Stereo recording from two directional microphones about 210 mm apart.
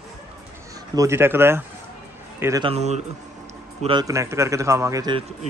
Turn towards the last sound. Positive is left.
turn(degrees=-20)  # may be behind; listen again after turning